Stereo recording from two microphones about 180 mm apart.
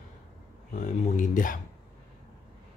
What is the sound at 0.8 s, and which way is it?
Speech, 45° left (ahead or behind).